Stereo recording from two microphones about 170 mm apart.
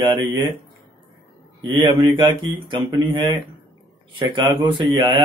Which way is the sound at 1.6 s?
25° right (ahead or behind).